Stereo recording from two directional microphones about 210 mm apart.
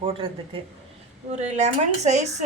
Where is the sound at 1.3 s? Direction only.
30° right (ahead or behind).